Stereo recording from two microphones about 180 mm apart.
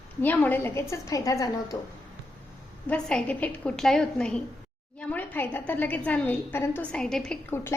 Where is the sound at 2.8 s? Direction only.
5° left (ahead or behind).